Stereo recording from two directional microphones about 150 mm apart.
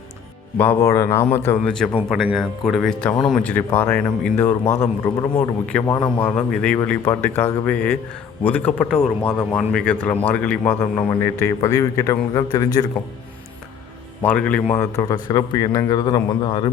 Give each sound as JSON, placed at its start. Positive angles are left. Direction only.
{"t": 0.5, "sound": "a man's voice", "side_deg": 15}
{"t": 2.0, "sound": "a man's voice", "side_deg": 0}
{"t": 14.2, "sound": "a man's voice", "side_deg": 10}
{"t": 14.8, "sound": "a man's voice", "side_deg": 20}